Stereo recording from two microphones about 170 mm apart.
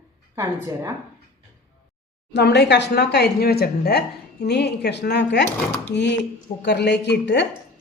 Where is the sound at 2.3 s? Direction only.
85° left.